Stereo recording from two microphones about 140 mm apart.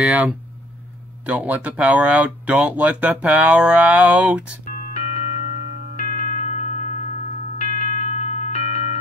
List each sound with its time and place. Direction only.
0.0 s speech: 10° right (ahead or behind)
4.6 s music: 60° left (ahead or behind)